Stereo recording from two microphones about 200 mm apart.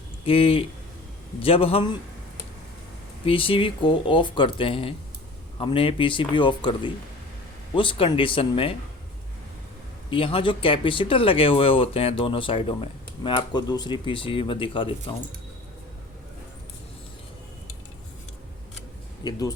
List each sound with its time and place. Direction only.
0.3 s speech: 30° left (ahead or behind)
3.2 s speech: 25° left (ahead or behind)
10.1 s speech: 25° left (ahead or behind)
19.2 s speech: 20° left (ahead or behind)